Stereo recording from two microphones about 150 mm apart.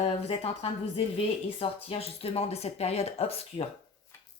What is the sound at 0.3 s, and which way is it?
Speech, 40° left (ahead or behind).